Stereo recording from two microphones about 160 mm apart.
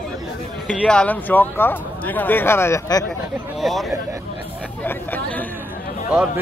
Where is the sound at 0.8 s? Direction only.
5° left (ahead or behind).